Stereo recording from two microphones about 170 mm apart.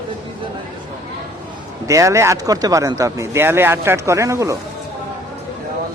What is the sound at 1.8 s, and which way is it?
Speech, 20° right (ahead or behind).